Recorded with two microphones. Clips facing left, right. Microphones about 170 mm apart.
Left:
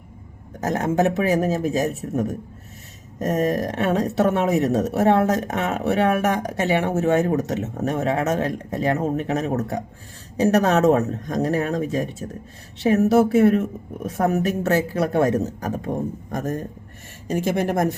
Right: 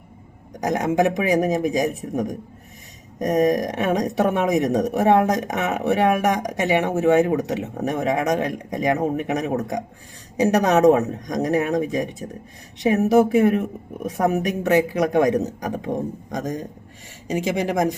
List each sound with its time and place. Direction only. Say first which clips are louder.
0.6 s speech: right 1 dB; 15° right (ahead or behind)
17.4 s speech: left 1 dB; 55° left (ahead or behind)